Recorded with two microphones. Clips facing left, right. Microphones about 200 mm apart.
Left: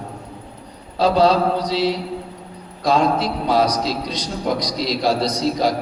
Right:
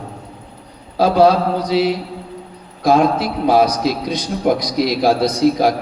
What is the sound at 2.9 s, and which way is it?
A man's voice, 55° right (ahead or behind).